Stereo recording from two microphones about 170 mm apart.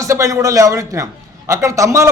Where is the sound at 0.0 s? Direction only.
20° right (ahead or behind).